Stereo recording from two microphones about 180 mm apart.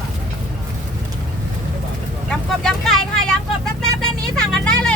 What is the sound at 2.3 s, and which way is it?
Vehicle, 5° left (ahead or behind).